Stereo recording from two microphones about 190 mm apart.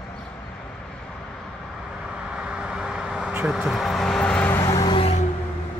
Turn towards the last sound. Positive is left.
turn(degrees=30)  # may be behind; listen again after turning